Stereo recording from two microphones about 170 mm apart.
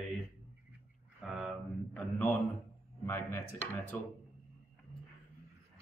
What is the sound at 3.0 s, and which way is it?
Speech, 15° left (ahead or behind).